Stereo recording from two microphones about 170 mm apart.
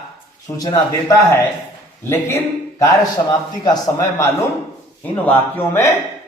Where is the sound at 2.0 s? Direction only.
15° left (ahead or behind).